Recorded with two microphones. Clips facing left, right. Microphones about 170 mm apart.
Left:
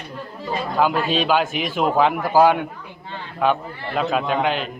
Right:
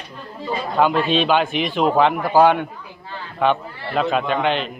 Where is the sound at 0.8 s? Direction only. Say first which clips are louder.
Right 3 dB; 5° left (ahead or behind).